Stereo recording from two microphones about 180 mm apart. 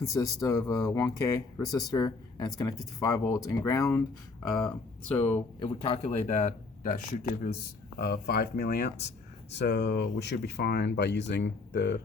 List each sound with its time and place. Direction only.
0.1 s speech: 20° left (ahead or behind)
5.5 s speech: 35° left (ahead or behind)
7.9 s speech: 60° left (ahead or behind)